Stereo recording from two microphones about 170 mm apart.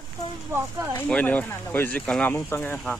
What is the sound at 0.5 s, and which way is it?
Speech, 15° right (ahead or behind).